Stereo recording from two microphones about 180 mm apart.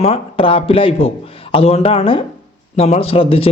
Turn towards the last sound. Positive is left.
turn(degrees=30)  # may be behind; listen again after turning